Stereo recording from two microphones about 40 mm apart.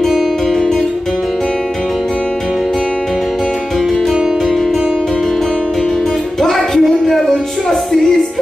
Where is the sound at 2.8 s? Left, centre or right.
Centre.